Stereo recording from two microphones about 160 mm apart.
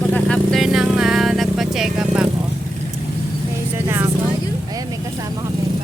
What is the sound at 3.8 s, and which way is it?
Vehicle, 15° right (ahead or behind).